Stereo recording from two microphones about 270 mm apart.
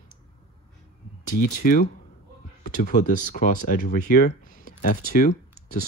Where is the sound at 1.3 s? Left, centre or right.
Left.